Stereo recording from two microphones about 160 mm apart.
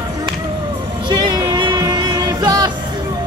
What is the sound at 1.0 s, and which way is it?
Music, 25° right (ahead or behind).